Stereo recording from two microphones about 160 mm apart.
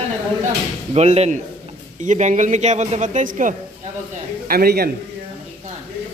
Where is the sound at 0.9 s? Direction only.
40° right (ahead or behind).